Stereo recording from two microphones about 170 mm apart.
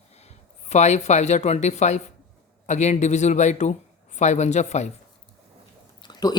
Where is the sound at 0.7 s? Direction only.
45° left (ahead or behind).